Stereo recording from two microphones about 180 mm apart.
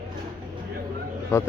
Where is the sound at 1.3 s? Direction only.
15° left (ahead or behind).